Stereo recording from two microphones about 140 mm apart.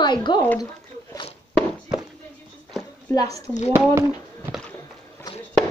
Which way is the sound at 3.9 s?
20° right (ahead or behind).